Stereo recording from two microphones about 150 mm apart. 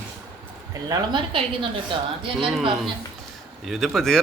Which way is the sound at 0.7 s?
30° right (ahead or behind).